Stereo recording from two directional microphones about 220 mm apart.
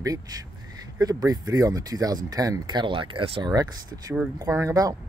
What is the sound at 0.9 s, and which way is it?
Speech, 15° right (ahead or behind).